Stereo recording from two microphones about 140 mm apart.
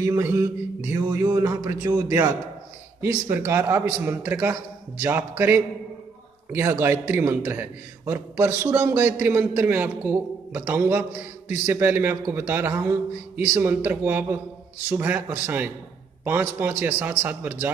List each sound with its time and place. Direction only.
0.0 s mantra: 20° right (ahead or behind)
3.0 s a man's voice: 15° right (ahead or behind)